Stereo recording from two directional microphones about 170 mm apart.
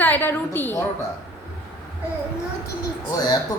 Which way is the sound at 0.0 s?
10° left (ahead or behind).